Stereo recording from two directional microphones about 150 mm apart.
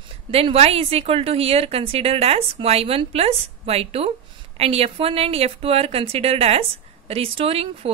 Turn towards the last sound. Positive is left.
turn(degrees=-40)  # may be behind; listen again after turning